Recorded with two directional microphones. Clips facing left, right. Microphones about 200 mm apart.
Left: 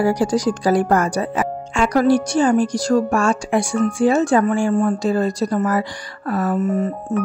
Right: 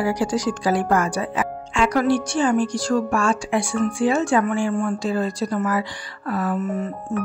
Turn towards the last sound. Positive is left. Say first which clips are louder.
# left 5 dB
turn(degrees=40)  # may be behind; listen again after turning